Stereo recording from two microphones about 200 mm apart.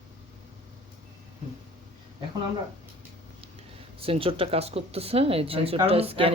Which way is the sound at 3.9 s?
30° right (ahead or behind).